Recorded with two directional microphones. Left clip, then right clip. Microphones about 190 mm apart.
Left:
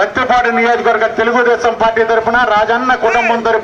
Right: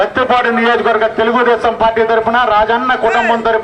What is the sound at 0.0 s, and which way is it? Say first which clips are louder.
A man's voice: even; centre (ahead or behind).